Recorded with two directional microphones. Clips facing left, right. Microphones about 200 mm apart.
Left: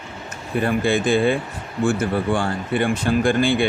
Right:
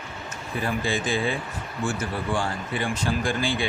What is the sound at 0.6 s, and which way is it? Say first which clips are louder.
Speech: left 7 dB; 60° left (ahead or behind).